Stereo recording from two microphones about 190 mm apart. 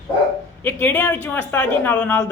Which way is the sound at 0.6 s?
10° left (ahead or behind).